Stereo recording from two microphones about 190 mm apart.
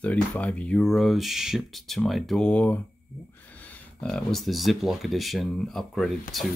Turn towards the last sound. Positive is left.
turn(degrees=0)  # may be behind; listen again after turning